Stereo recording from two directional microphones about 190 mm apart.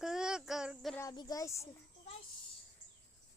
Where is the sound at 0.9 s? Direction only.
20° left (ahead or behind).